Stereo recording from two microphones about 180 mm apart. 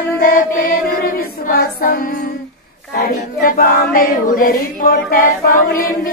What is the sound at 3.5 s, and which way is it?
Choir, 55° left (ahead or behind).